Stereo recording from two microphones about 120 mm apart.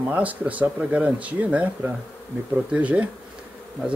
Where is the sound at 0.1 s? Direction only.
15° right (ahead or behind).